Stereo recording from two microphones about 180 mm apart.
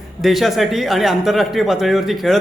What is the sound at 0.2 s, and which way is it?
Speech, centre (ahead or behind).